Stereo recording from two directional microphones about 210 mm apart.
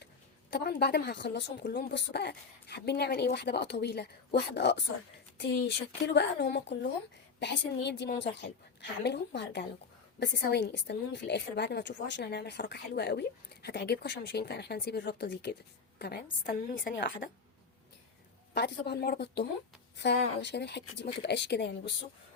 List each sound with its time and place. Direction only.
0.5 s a woman's voice: 50° left (ahead or behind)
18.5 s a woman's voice: 50° left (ahead or behind)